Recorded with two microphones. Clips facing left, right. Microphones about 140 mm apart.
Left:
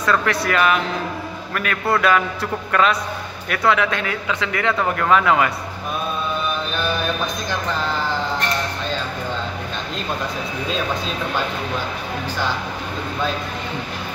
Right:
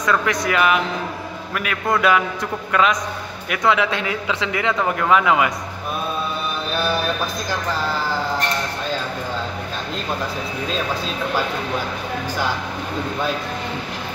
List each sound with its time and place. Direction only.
0.0 s speech: 15° right (ahead or behind)